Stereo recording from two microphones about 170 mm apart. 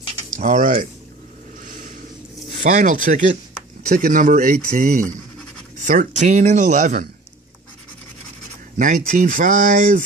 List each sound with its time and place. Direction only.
0.3 s speech: 50° right (ahead or behind)
1.6 s a sound: 50° right (ahead or behind)
2.6 s speech: 45° right (ahead or behind)
8.7 s speech: 50° right (ahead or behind)